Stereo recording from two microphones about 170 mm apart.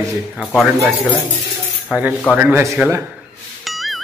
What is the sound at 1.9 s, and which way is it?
A man's voice, 5° right (ahead or behind).